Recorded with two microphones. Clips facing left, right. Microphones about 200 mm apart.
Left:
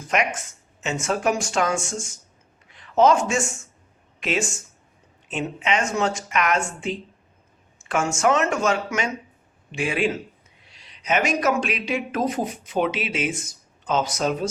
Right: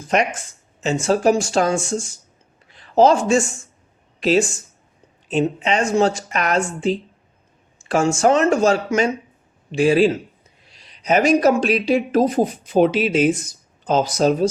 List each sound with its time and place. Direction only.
0.1 s speech: 30° right (ahead or behind)